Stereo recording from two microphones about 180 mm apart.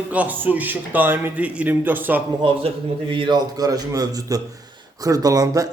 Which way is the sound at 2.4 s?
30° right (ahead or behind).